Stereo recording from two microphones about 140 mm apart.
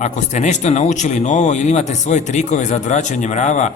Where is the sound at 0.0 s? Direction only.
55° left (ahead or behind).